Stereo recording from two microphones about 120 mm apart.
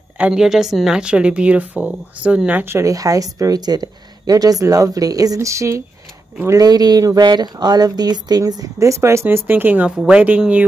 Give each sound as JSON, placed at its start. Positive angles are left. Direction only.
{"t": 0.2, "sound": "a woman's voice", "side_deg": -5}